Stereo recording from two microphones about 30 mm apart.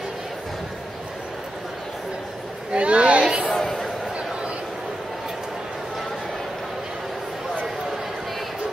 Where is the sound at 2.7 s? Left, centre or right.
Right.